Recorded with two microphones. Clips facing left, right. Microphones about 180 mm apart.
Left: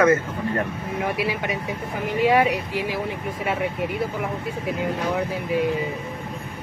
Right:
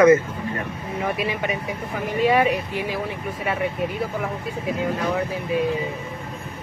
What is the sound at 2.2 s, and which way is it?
Speech, 10° left (ahead or behind).